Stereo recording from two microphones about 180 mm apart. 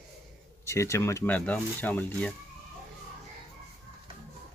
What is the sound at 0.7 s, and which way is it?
Speech, 15° left (ahead or behind).